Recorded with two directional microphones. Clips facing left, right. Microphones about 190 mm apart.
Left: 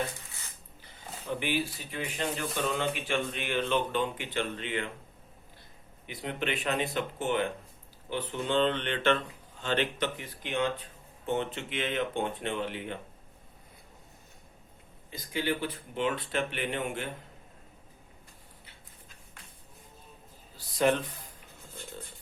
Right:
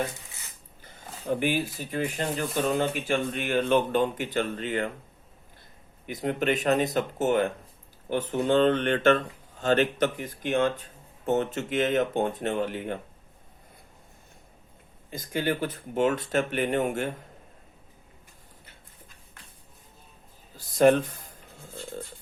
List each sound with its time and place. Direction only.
1.3 s speech: 45° right (ahead or behind)
6.1 s speech: 45° right (ahead or behind)
15.1 s speech: 45° right (ahead or behind)
20.8 s speech: 45° right (ahead or behind)